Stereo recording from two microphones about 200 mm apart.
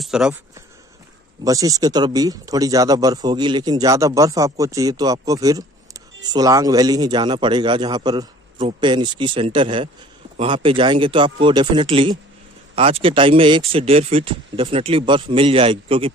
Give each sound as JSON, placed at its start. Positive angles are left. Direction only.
{"t": 0.0, "sound": "speech", "side_deg": -5}
{"t": 1.4, "sound": "speech", "side_deg": -15}